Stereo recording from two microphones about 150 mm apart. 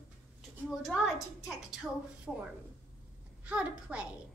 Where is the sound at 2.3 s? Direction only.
5° right (ahead or behind).